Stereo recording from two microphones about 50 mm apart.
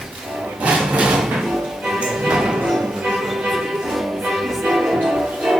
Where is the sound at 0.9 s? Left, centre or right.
Right.